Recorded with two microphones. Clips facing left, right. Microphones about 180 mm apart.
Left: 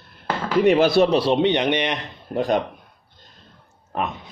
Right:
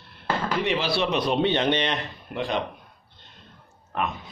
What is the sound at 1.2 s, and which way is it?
Speech, 20° left (ahead or behind).